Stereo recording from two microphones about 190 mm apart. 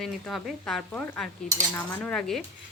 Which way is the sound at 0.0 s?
Centre (ahead or behind).